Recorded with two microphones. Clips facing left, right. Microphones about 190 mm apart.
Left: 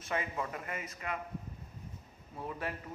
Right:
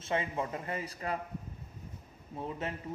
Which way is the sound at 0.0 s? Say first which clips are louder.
Right 3 dB; 25° right (ahead or behind).